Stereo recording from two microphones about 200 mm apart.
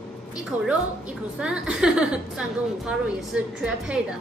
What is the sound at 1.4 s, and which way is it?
A woman's voice, 5° right (ahead or behind).